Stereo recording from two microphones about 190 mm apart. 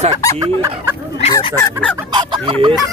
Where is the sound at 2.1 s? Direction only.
25° right (ahead or behind).